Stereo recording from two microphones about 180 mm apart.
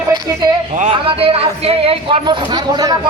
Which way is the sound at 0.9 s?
30° right (ahead or behind).